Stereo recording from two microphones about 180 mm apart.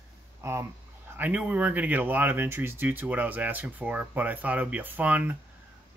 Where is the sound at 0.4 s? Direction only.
15° right (ahead or behind).